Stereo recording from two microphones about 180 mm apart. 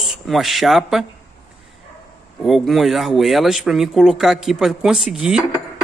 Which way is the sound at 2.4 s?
Centre (ahead or behind).